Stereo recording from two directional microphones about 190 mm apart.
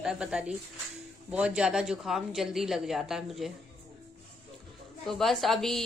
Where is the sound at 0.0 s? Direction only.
5° right (ahead or behind).